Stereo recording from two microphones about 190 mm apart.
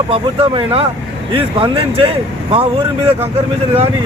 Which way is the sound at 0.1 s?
30° right (ahead or behind).